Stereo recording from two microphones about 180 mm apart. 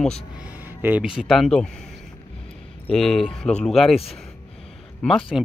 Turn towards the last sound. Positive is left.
turn(degrees=5)  # may be behind; listen again after turning